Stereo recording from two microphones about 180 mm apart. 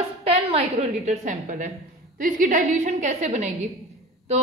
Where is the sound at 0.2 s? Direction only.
35° right (ahead or behind).